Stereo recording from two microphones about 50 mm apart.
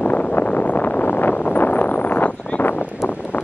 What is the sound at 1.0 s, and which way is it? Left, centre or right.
Vehicle, left.